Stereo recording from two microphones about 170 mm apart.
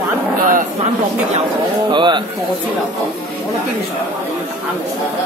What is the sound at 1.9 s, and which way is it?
Speech, 25° right (ahead or behind).